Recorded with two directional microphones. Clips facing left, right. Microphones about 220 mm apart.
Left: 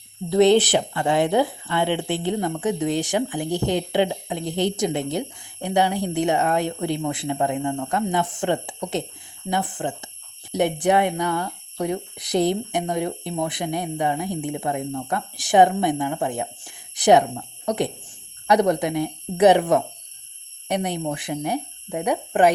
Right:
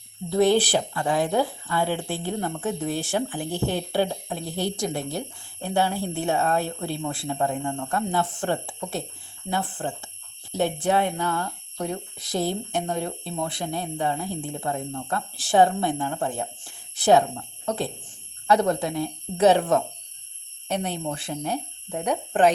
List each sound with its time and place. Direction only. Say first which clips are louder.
0.3 s speech: left 4 dB; 20° left (ahead or behind)